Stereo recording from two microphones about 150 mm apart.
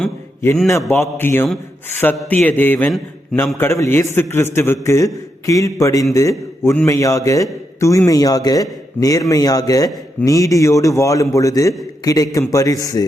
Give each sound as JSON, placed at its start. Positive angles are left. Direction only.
{"t": 0.7, "sound": "a man's voice", "side_deg": 20}